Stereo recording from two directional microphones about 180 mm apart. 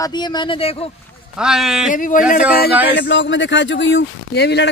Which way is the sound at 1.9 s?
45° left (ahead or behind).